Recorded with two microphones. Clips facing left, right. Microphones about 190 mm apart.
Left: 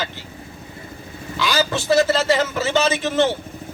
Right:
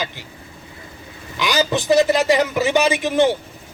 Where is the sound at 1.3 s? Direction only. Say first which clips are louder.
Right 2 dB; 15° right (ahead or behind).